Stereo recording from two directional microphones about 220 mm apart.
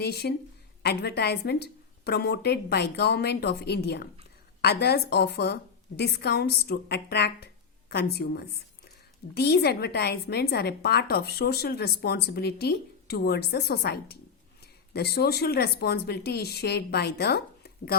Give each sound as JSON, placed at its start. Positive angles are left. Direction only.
{"t": 0.0, "sound": "a woman's voice", "side_deg": 45}